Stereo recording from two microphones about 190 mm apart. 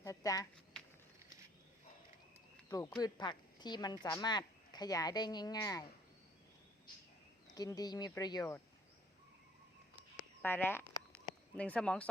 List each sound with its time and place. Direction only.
0.0 s a sound: 20° left (ahead or behind)
2.6 s speech: 15° left (ahead or behind)
7.5 s speech: 20° left (ahead or behind)
10.4 s speech: 10° left (ahead or behind)